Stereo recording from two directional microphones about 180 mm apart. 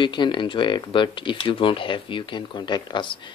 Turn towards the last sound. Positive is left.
turn(degrees=25)  # may be behind; listen again after turning